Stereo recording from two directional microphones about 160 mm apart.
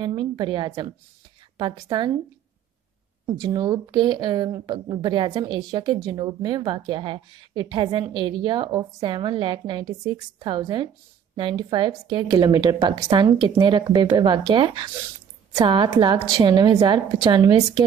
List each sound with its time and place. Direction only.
0.0 s a woman's voice: 30° right (ahead or behind)
3.3 s a woman's voice: 25° right (ahead or behind)